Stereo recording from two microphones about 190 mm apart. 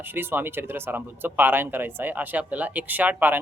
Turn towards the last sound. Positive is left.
turn(degrees=-10)  # may be behind; listen again after turning